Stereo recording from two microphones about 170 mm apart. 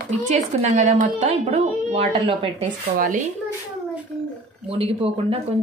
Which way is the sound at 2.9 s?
50° right (ahead or behind).